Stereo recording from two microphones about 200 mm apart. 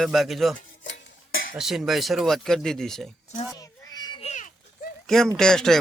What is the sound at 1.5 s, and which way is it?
Speech, centre (ahead or behind).